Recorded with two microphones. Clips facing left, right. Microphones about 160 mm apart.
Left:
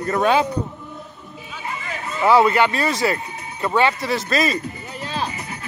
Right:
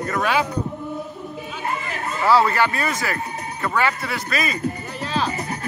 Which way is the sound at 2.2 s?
20° left (ahead or behind).